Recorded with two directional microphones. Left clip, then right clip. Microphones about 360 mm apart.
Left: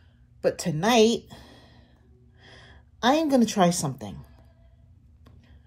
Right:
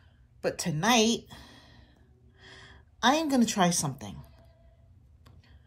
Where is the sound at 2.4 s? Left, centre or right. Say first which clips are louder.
Even; centre.